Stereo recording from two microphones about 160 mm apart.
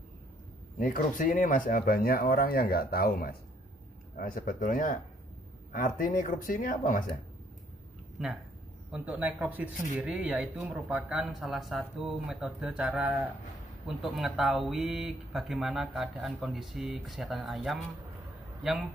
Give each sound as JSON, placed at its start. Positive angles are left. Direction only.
{"t": 0.7, "sound": "speech", "side_deg": 55}
{"t": 8.9, "sound": "a man's voice", "side_deg": -10}